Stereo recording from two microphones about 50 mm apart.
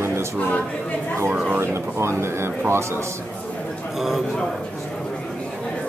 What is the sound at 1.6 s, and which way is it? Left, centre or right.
Speech, right.